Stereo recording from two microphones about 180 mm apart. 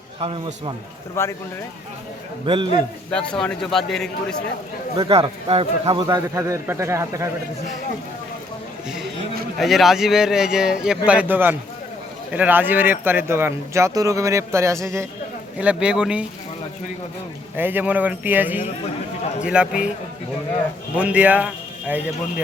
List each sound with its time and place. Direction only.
0.2 s a man's voice: 30° right (ahead or behind)
1.2 s speech: 15° left (ahead or behind)
3.1 s speech: 5° left (ahead or behind)
4.9 s a man's voice: 25° right (ahead or behind)
9.6 s speech: centre (ahead or behind); by 15.0 s 15° right (ahead or behind)
15.5 s speech: 5° right (ahead or behind)
17.6 s speech: 10° right (ahead or behind)
20.9 s speech: 5° right (ahead or behind)